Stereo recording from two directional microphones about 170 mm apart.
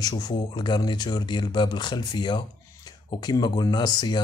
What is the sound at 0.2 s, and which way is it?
Speech, 25° left (ahead or behind).